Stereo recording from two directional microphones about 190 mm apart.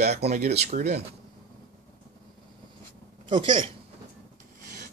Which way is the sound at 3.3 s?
25° right (ahead or behind).